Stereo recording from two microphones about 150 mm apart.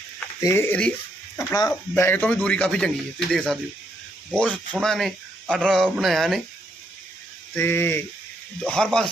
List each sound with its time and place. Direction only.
0.4 s speech: 15° left (ahead or behind)
1.5 s speech: 20° left (ahead or behind); by 6.4 s centre (ahead or behind)
7.5 s speech: 15° left (ahead or behind)